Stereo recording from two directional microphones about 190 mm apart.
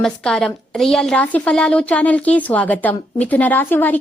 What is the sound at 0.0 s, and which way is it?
A woman's voice, 5° left (ahead or behind).